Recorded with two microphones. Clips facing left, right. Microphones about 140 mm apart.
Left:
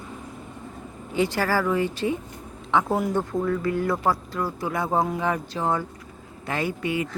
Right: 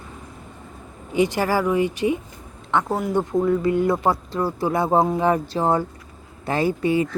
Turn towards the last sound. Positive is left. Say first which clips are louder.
# right 6 dB
turn(degrees=-35)  # may be behind; listen again after turning